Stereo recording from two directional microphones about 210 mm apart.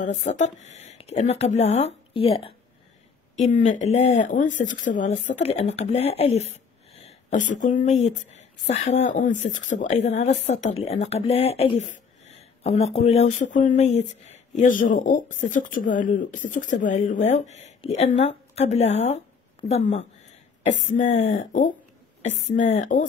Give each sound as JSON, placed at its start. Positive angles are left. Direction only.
{"t": 0.0, "sound": "a woman's voice", "side_deg": 35}